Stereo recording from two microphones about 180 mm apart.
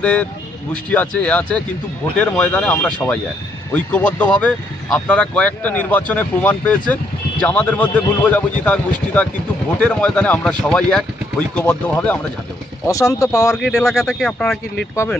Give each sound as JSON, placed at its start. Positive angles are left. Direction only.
{"t": 0.0, "sound": "speech", "side_deg": 5}
{"t": 13.8, "sound": "speech", "side_deg": 0}